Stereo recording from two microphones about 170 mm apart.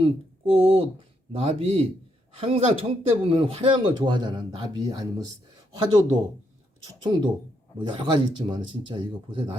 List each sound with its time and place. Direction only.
0.0 s speech: 35° right (ahead or behind)
6.8 s speech: 25° right (ahead or behind)